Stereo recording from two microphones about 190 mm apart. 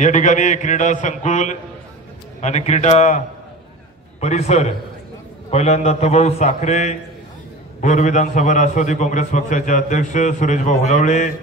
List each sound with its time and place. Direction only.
0.0 s a man's voice: 40° left (ahead or behind)
4.2 s a man's voice: 35° left (ahead or behind)